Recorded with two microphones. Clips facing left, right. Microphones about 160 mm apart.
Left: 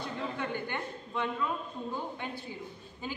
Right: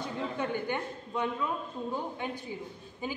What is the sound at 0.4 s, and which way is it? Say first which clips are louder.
Speech: right 3 dB; 20° right (ahead or behind).